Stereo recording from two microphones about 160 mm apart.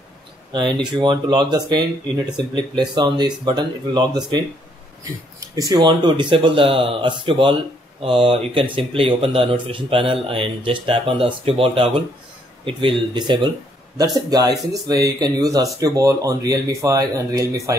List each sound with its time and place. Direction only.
0.5 s speech: 30° right (ahead or behind)
5.6 s speech: 25° right (ahead or behind)